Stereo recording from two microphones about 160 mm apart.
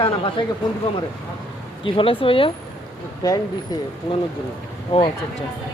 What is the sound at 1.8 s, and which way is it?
Speech, 35° left (ahead or behind).